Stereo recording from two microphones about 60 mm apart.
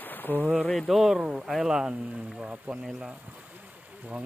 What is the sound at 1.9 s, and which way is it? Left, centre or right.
Speech, right.